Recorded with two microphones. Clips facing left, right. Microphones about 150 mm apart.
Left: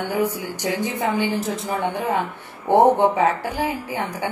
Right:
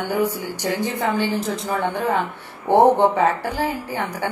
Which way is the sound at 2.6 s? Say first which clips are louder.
Right 1 dB; 5° left (ahead or behind).